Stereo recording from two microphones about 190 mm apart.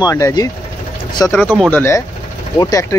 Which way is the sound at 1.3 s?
Centre (ahead or behind).